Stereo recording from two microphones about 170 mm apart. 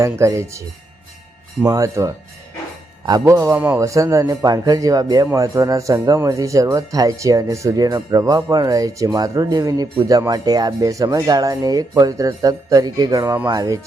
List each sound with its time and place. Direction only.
0.0 s speech: 15° right (ahead or behind)
1.6 s a man's voice: 20° right (ahead or behind)